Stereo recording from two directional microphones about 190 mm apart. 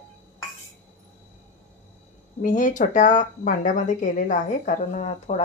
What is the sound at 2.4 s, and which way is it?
A woman's voice, 45° left (ahead or behind).